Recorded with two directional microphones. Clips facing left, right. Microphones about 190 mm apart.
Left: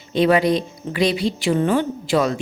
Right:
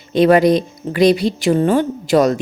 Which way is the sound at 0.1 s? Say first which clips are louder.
Right 5 dB; 45° right (ahead or behind).